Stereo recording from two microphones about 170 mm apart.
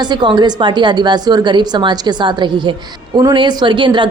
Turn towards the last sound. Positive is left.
turn(degrees=-30)  # may be behind; listen again after turning